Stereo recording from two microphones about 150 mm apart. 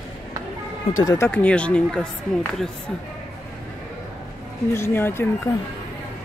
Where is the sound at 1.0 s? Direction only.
15° left (ahead or behind).